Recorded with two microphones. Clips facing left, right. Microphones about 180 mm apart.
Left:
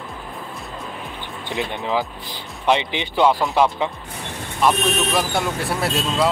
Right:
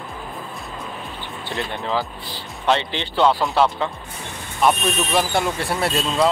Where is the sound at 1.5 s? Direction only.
15° left (ahead or behind).